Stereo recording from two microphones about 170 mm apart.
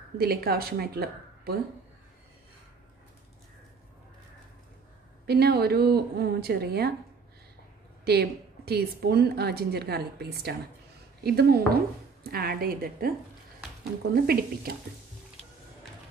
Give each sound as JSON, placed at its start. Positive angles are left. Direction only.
{"t": 0.2, "sound": "a woman's voice", "side_deg": -65}
{"t": 5.2, "sound": "a woman's voice", "side_deg": -70}
{"t": 8.0, "sound": "a woman's voice", "side_deg": -70}
{"t": 14.1, "sound": "a woman's voice", "side_deg": -65}